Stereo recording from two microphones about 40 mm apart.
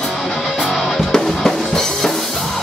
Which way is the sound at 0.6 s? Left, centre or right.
Centre.